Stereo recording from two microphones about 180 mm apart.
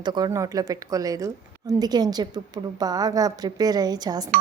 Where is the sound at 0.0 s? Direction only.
25° right (ahead or behind).